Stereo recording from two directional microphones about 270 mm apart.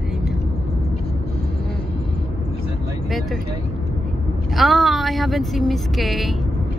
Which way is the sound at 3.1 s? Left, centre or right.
Centre.